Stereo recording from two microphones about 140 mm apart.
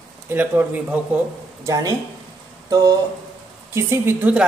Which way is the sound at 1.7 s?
25° right (ahead or behind).